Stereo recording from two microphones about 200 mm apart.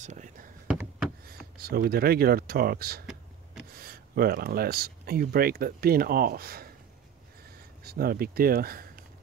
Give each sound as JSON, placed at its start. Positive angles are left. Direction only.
{"t": 0.0, "sound": "a sound", "side_deg": -40}
{"t": 1.6, "sound": "speech", "side_deg": -50}
{"t": 7.8, "sound": "speech", "side_deg": -50}